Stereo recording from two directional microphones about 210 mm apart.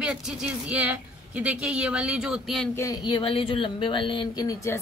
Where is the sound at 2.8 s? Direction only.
20° left (ahead or behind).